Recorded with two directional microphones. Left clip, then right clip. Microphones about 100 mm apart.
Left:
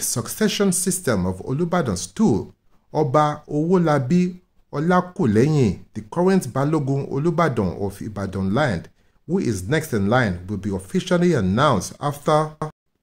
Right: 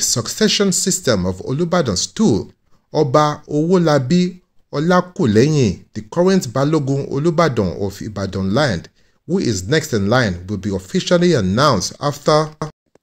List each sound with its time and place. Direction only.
0.0 s speech: 15° right (ahead or behind)